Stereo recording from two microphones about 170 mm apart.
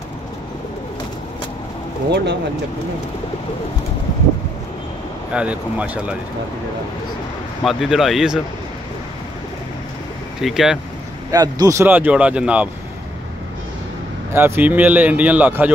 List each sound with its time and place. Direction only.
2.0 s speech: 90° right
5.3 s speech: 5° right (ahead or behind)
7.6 s speech: centre (ahead or behind)
10.4 s speech: centre (ahead or behind)
11.3 s speech: 20° right (ahead or behind)
14.3 s speech: 15° right (ahead or behind)